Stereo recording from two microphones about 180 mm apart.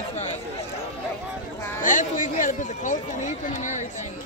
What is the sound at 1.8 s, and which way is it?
A man's voice, 45° left (ahead or behind).